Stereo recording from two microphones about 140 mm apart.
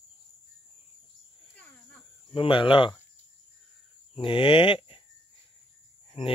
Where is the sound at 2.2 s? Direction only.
35° left (ahead or behind).